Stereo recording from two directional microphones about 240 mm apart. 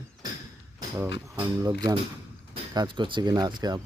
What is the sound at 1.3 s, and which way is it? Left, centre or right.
Speech, centre.